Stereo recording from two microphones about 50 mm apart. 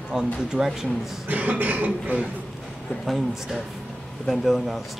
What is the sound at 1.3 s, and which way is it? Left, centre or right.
Speech, right.